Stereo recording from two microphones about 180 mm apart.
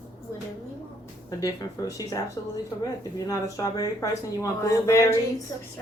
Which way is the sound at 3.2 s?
20° left (ahead or behind).